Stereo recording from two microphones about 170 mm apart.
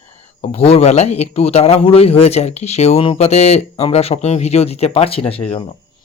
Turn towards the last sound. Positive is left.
turn(degrees=35)  # may be behind; listen again after turning